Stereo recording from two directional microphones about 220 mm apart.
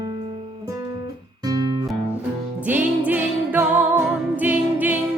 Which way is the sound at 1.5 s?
20° right (ahead or behind).